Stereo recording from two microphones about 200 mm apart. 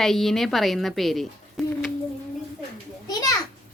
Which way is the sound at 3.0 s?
20° left (ahead or behind).